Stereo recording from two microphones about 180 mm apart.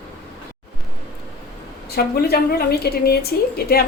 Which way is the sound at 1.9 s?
60° left (ahead or behind).